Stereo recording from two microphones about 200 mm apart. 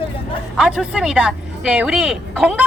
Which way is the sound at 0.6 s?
5° right (ahead or behind).